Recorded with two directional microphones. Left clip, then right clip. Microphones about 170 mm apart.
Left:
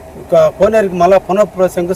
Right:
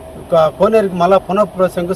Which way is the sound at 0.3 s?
10° left (ahead or behind).